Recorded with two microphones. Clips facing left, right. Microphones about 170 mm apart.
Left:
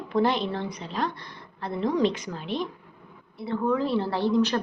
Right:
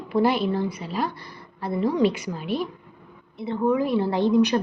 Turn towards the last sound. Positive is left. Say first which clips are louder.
# right 4 dB
turn(degrees=-15)  # may be behind; listen again after turning